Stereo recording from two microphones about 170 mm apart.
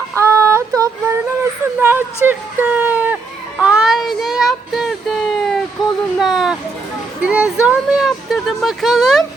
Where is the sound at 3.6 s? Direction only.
5° right (ahead or behind).